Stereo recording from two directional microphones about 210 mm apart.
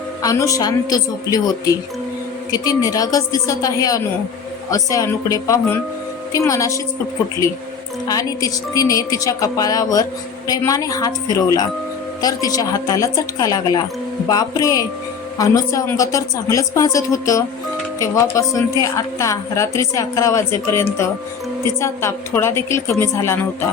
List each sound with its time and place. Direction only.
0.2 s speech: 15° left (ahead or behind)
8.0 s speech: 15° left (ahead or behind)
12.2 s speech: 15° left (ahead or behind)